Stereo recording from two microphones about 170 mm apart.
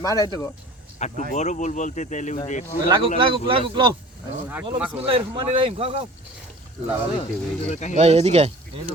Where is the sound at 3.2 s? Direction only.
30° right (ahead or behind).